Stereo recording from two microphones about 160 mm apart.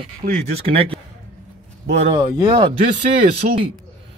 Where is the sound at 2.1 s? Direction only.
25° right (ahead or behind).